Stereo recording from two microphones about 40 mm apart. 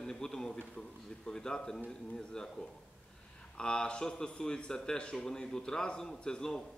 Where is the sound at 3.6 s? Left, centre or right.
Left.